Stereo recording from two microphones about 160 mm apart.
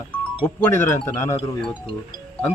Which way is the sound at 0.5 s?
15° left (ahead or behind).